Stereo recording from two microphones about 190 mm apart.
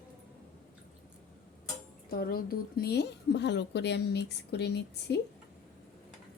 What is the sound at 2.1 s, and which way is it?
A woman's voice, 50° left (ahead or behind).